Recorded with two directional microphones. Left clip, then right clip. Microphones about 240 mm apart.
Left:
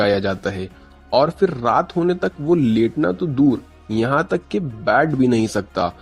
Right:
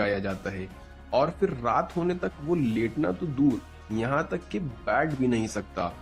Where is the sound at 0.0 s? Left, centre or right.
Left.